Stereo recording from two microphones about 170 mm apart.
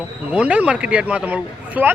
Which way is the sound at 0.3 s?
5° right (ahead or behind).